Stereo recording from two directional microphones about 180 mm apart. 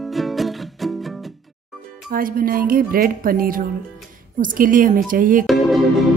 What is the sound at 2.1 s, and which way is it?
A woman's voice, 50° right (ahead or behind).